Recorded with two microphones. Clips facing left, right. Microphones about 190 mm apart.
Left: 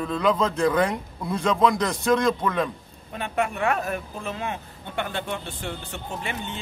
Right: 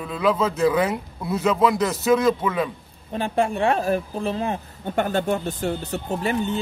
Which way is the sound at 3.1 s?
30° right (ahead or behind).